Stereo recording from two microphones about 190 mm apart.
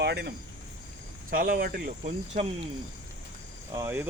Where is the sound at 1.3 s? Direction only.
50° right (ahead or behind).